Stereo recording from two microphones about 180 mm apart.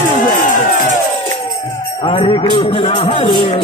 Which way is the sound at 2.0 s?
30° left (ahead or behind).